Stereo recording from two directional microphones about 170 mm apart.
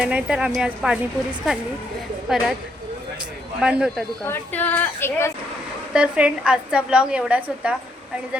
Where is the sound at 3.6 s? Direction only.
5° right (ahead or behind).